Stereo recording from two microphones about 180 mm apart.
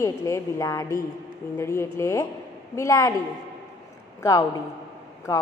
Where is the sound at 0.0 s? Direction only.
20° left (ahead or behind).